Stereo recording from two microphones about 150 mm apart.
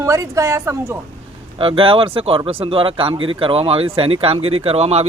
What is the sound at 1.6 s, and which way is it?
Speech, 35° right (ahead or behind).